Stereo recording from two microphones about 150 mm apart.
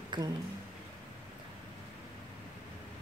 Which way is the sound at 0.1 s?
30° right (ahead or behind).